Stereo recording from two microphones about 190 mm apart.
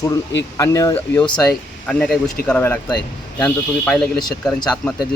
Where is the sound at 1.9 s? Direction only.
Centre (ahead or behind).